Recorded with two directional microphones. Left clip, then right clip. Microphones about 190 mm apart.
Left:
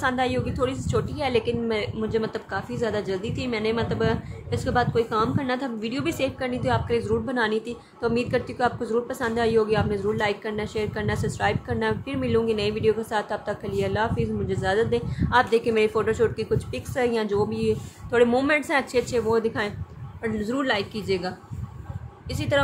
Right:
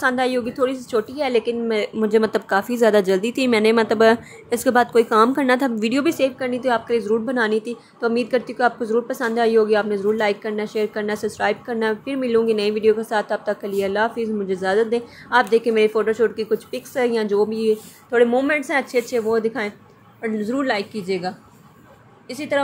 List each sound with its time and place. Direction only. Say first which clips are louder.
0.0 s a woman's voice: right 5 dB; 25° right (ahead or behind)
6.0 s a woman's voice: right 3 dB; 25° right (ahead or behind)
22.3 s a woman's voice: right 2 dB; 20° right (ahead or behind)